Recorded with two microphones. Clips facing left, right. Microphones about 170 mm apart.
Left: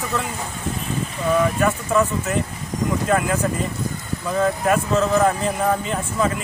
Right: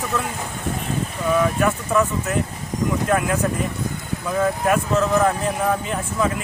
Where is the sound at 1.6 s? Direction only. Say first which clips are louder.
Even; centre (ahead or behind).